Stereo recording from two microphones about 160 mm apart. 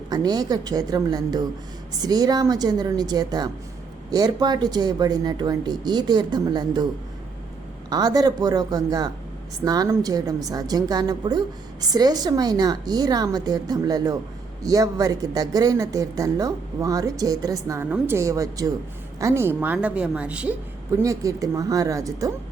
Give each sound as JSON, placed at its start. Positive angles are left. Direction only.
{"t": 0.1, "sound": "speech", "side_deg": -25}
{"t": 7.9, "sound": "a woman's voice", "side_deg": -25}
{"t": 20.9, "sound": "speech", "side_deg": -20}